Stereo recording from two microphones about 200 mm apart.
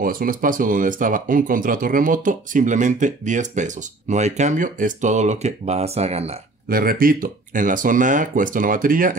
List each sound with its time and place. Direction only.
0.0 s speech: 45° right (ahead or behind)
6.7 s speech: 45° right (ahead or behind)